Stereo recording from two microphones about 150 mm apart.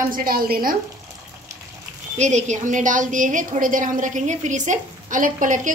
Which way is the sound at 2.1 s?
50° right (ahead or behind).